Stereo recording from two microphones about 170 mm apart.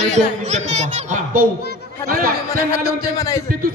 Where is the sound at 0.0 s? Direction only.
40° right (ahead or behind).